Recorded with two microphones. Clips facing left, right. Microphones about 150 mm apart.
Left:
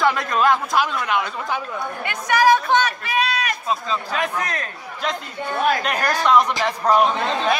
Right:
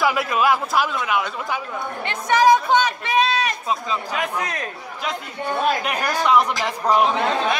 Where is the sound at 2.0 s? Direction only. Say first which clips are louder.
Right 1 dB; 25° right (ahead or behind).